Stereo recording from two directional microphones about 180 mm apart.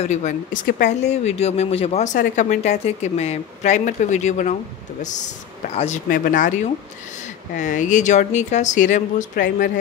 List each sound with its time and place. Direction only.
0.0 s speech: 40° left (ahead or behind)